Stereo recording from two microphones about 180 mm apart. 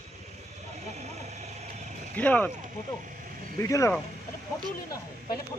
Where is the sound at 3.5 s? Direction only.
15° left (ahead or behind).